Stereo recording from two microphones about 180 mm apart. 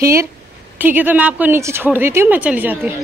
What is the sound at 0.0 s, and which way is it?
A woman's voice, 15° right (ahead or behind).